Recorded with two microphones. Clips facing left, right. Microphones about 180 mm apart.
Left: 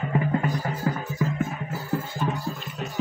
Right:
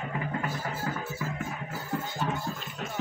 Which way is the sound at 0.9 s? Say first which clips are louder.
Left 8 dB; 25° left (ahead or behind).